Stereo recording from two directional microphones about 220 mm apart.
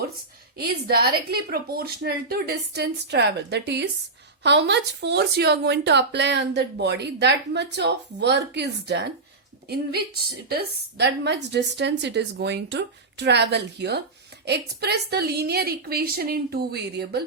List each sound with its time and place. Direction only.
0.5 s speech: 45° right (ahead or behind)